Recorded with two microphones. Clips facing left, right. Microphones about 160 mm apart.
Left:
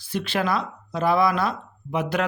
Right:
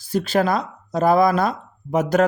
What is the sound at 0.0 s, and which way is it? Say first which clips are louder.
Speech: right 6 dB; 40° right (ahead or behind).